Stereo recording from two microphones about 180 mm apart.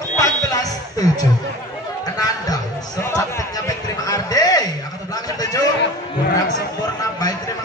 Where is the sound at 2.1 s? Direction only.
20° left (ahead or behind).